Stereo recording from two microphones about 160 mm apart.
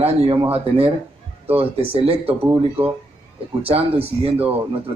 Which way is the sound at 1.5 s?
35° right (ahead or behind).